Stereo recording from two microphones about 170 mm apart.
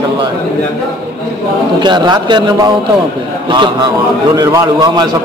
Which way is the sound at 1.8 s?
25° right (ahead or behind).